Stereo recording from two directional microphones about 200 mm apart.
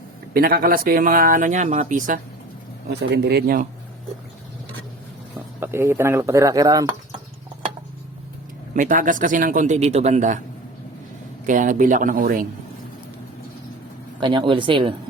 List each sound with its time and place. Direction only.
0.3 s speech: 50° right (ahead or behind)
3.0 s speech: 55° right (ahead or behind)
5.5 s speech: 10° right (ahead or behind)
8.7 s a man's voice: 40° right (ahead or behind)
11.4 s a man's voice: 40° right (ahead or behind)
14.2 s speech: 25° right (ahead or behind)